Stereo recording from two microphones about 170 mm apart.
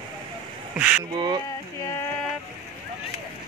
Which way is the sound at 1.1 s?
25° right (ahead or behind).